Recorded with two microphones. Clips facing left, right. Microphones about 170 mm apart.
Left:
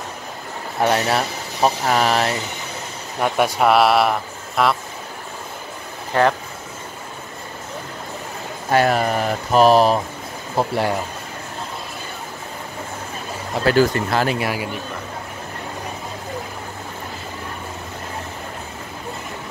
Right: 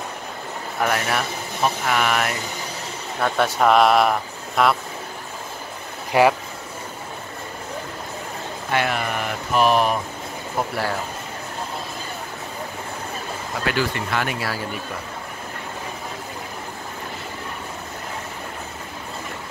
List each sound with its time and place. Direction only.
0.7 s speech: 25° left (ahead or behind)
3.2 s speech: 15° left (ahead or behind)
6.1 s speech: 10° right (ahead or behind)
8.6 s speech: 40° left (ahead or behind)
10.7 s speech: 25° left (ahead or behind)
13.7 s speech: 40° left (ahead or behind)
14.3 s speech: 15° left (ahead or behind)